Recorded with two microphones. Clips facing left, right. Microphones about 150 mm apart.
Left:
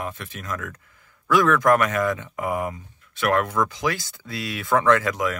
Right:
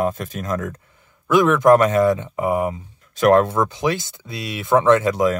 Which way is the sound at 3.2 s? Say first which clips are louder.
Right 7 dB; 35° right (ahead or behind).